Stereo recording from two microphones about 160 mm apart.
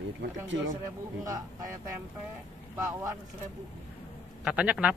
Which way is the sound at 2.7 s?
20° right (ahead or behind).